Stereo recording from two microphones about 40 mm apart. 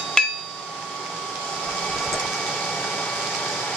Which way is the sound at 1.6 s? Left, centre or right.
Centre.